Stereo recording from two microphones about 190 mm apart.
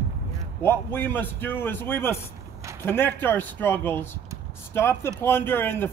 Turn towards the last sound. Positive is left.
turn(degrees=10)  # may be behind; listen again after turning